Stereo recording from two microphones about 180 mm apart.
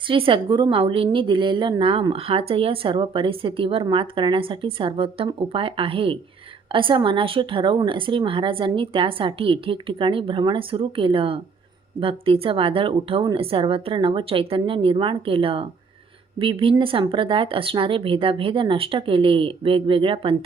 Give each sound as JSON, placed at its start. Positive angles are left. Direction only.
{"t": 0.1, "sound": "a woman's voice", "side_deg": -30}